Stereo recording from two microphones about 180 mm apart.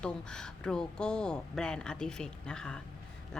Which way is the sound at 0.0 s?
5° left (ahead or behind).